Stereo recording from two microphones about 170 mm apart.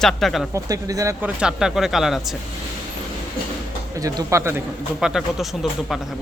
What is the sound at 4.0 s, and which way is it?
Speech, 20° right (ahead or behind).